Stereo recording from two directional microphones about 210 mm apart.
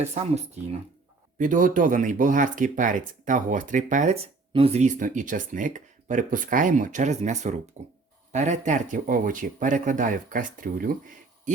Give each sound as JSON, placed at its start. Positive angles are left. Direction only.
{"t": 0.0, "sound": "speech", "side_deg": -30}